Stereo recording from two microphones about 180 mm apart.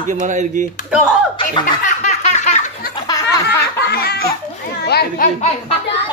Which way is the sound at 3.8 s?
60° left (ahead or behind).